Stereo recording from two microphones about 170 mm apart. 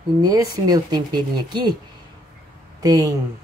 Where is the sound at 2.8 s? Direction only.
20° right (ahead or behind).